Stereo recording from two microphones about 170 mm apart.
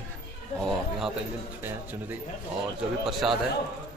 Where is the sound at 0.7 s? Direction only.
Centre (ahead or behind).